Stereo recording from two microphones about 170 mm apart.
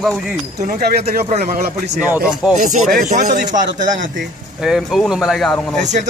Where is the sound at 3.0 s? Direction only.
55° right (ahead or behind).